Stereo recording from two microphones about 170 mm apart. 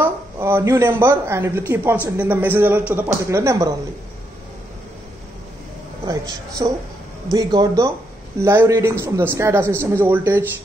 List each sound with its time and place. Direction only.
0.0 s a man's voice: 10° right (ahead or behind)
6.0 s a woman's voice: 20° right (ahead or behind)